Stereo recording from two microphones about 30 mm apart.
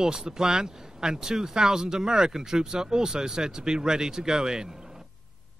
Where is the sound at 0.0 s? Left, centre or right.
Right.